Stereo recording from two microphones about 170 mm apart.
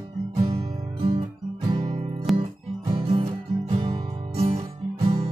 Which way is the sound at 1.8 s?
35° right (ahead or behind).